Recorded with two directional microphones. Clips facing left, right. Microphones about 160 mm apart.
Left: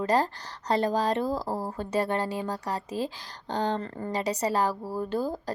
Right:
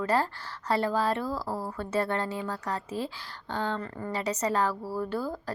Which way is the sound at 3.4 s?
40° left (ahead or behind).